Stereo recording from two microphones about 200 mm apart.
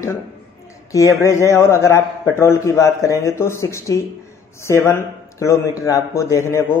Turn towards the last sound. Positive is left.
turn(degrees=15)  # may be behind; listen again after turning